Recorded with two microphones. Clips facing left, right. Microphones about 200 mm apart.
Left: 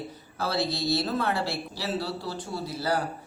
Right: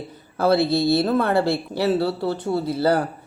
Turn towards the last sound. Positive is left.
turn(degrees=-60)  # may be behind; listen again after turning